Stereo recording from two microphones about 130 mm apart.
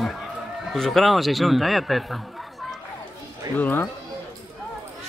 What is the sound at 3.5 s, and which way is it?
Speech, 15° left (ahead or behind).